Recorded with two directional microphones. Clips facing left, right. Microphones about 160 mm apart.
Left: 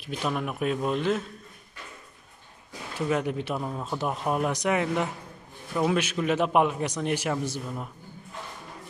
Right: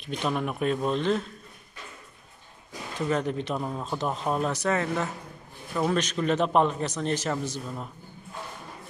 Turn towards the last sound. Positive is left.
turn(degrees=10)  # may be behind; listen again after turning